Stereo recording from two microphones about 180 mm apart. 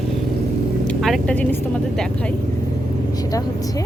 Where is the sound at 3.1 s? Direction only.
20° left (ahead or behind).